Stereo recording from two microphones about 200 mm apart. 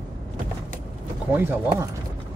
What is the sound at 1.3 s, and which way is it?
Speech, 10° right (ahead or behind).